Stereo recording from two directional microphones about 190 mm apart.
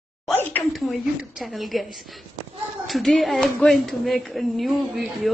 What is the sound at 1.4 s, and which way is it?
A woman's voice, centre (ahead or behind).